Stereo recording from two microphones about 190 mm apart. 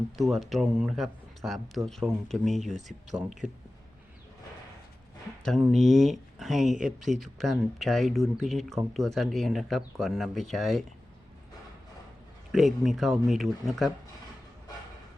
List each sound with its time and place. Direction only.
0.2 s speech: centre (ahead or behind)
5.4 s speech: centre (ahead or behind)
12.5 s speech: centre (ahead or behind)